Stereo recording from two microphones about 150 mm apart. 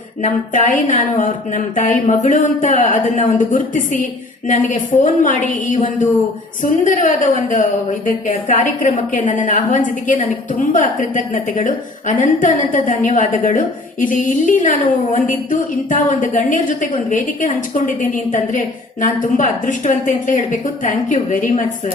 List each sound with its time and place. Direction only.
0.2 s a woman's voice: 50° left (ahead or behind)